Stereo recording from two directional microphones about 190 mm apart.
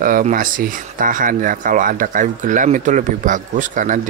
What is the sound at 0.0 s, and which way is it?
Speech, 45° right (ahead or behind).